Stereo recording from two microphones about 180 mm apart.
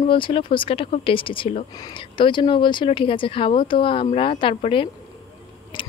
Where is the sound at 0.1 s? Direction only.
30° left (ahead or behind).